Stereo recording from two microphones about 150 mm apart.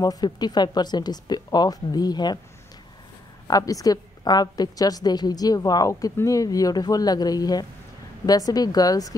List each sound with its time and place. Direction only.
0.0 s a woman's voice: 25° left (ahead or behind)
3.4 s a woman's voice: 25° left (ahead or behind)